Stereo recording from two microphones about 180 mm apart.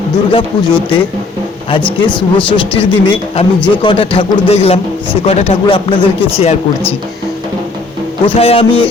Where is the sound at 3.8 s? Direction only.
30° left (ahead or behind).